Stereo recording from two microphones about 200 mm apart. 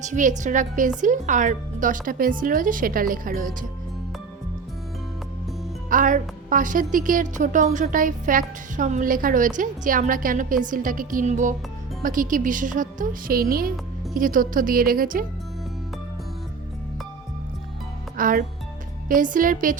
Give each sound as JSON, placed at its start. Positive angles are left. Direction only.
{"t": 0.0, "sound": "a woman's voice", "side_deg": -40}
{"t": 5.9, "sound": "a woman's voice", "side_deg": -40}
{"t": 18.2, "sound": "a woman's voice", "side_deg": -45}